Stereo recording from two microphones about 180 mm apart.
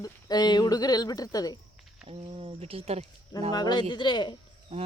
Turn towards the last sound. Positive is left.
turn(degrees=-35)  # may be behind; listen again after turning